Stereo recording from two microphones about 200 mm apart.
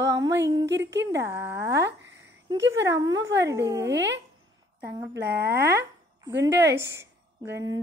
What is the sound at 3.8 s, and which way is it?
Speech, 60° right (ahead or behind).